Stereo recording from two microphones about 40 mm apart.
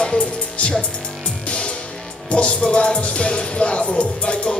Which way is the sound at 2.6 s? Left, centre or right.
Left.